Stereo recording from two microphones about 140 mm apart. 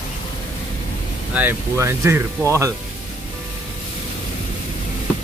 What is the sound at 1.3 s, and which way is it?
Speech, 15° right (ahead or behind).